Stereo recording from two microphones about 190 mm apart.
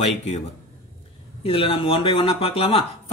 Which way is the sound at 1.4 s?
30° left (ahead or behind).